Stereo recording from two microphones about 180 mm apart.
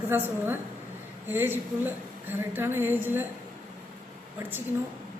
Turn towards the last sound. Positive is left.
turn(degrees=-10)  # may be behind; listen again after turning